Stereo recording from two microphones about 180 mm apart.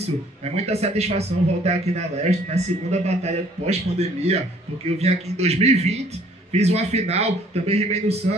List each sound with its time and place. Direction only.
0.0 s speech: 35° right (ahead or behind)